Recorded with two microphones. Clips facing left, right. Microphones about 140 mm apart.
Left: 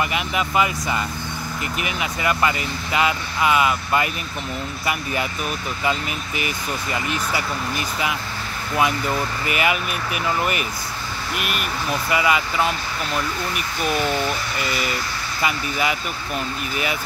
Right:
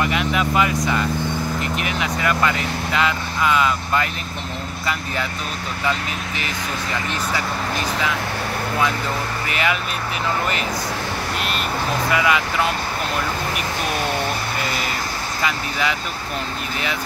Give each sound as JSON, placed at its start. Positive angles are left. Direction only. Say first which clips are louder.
{"t": 0.0, "sound": "speech", "louder": "right 3 dB", "side_deg": 5}
{"t": 5.9, "sound": "speech", "louder": "even", "side_deg": 10}
{"t": 9.5, "sound": "speech", "louder": "left 1 dB", "side_deg": 10}
{"t": 11.3, "sound": "speech", "louder": "left 1 dB", "side_deg": 10}
{"t": 14.6, "sound": "speech", "louder": "even", "side_deg": -45}
{"t": 15.4, "sound": "speech", "louder": "left 1 dB", "side_deg": 5}